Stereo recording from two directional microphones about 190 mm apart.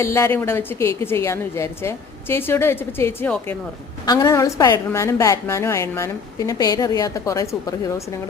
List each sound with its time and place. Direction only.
0.0 s a woman's voice: 15° left (ahead or behind)